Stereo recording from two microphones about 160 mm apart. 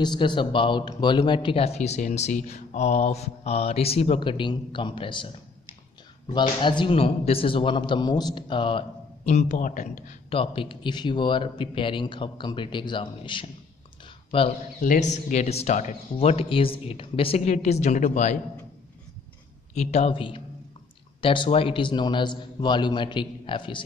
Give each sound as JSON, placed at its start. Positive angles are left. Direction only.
{"t": 0.0, "sound": "a man's voice", "side_deg": 30}
{"t": 6.3, "sound": "a man's voice", "side_deg": 30}
{"t": 9.2, "sound": "speech", "side_deg": 45}
{"t": 10.3, "sound": "a man's voice", "side_deg": 35}
{"t": 14.8, "sound": "speech", "side_deg": 50}
{"t": 19.7, "sound": "a man's voice", "side_deg": 45}